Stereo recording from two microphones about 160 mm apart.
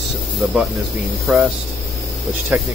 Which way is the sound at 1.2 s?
Centre (ahead or behind).